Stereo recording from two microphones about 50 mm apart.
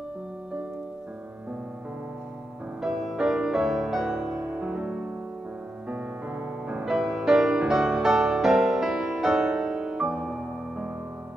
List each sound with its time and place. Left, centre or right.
2.8 s music: centre
5.9 s music: right
6.8 s music: centre